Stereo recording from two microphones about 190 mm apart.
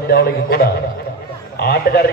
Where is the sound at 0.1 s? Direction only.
55° left (ahead or behind).